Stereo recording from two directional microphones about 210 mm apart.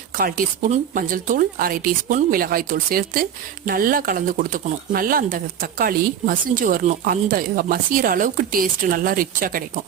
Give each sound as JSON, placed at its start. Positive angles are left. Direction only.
{"t": 0.2, "sound": "speech", "side_deg": -40}